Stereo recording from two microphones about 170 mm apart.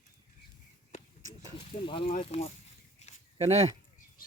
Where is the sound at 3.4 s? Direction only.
40° right (ahead or behind).